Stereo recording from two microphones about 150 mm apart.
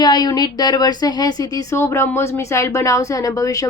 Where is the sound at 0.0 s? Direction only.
25° left (ahead or behind).